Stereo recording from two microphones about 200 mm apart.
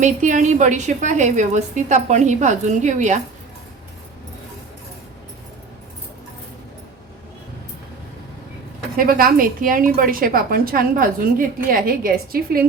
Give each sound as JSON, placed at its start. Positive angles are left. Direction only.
{"t": 0.0, "sound": "a woman's voice", "side_deg": -40}
{"t": 9.0, "sound": "a woman's voice", "side_deg": -45}